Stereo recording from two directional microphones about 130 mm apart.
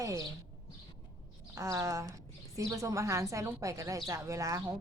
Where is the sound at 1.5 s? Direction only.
25° right (ahead or behind).